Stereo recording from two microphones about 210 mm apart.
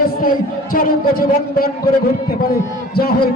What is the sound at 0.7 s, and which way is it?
Speech, 45° left (ahead or behind).